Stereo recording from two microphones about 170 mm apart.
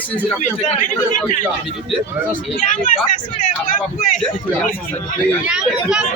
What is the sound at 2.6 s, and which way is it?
Speech, 50° left (ahead or behind).